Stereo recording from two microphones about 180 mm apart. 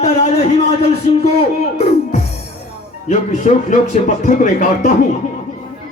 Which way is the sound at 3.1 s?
40° left (ahead or behind).